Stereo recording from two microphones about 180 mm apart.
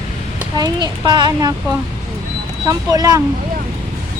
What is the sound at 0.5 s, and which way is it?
A child's voice, 25° right (ahead or behind).